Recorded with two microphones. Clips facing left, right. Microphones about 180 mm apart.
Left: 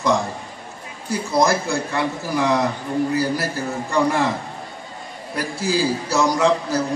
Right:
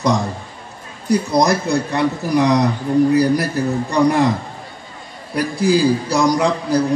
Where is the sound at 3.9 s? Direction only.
15° right (ahead or behind).